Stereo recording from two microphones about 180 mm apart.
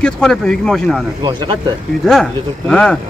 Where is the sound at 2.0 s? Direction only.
Centre (ahead or behind).